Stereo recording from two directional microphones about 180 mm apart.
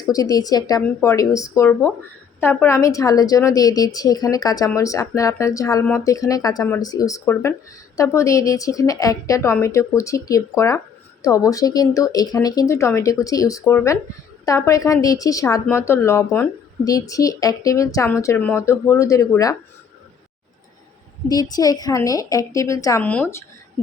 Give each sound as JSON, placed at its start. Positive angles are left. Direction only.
{"t": 0.0, "sound": "a woman's voice", "side_deg": 20}
{"t": 21.5, "sound": "a woman's voice", "side_deg": 20}